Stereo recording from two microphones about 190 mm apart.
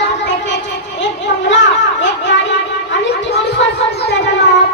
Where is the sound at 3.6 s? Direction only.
70° left (ahead or behind).